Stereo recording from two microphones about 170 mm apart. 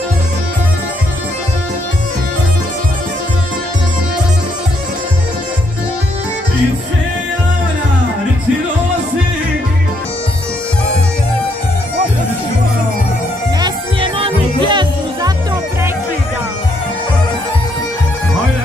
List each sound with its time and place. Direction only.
14.1 s music: 30° right (ahead or behind)